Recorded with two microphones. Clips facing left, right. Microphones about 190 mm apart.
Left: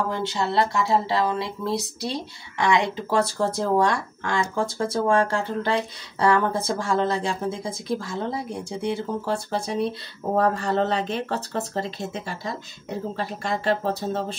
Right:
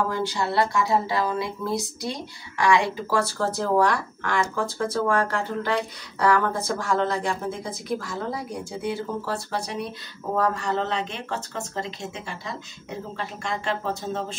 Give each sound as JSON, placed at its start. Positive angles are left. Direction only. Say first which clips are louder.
{"t": 0.1, "sound": "speech", "louder": "left 1 dB", "side_deg": 25}